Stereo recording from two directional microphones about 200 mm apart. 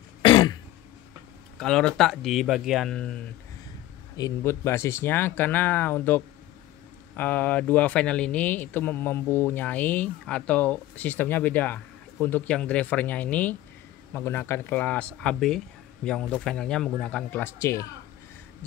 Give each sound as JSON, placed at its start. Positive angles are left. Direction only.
{"t": 0.2, "sound": "throat clearing", "side_deg": 25}
{"t": 1.6, "sound": "speech", "side_deg": 5}
{"t": 4.2, "sound": "speech", "side_deg": 15}